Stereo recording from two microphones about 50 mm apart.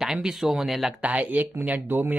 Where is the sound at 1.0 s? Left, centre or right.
Right.